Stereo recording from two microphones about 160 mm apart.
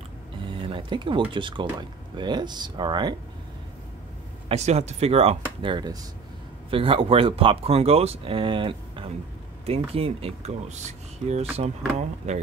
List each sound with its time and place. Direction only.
0.5 s a sound: 30° right (ahead or behind)
1.3 s speech: 30° right (ahead or behind)
4.5 s speech: 40° right (ahead or behind)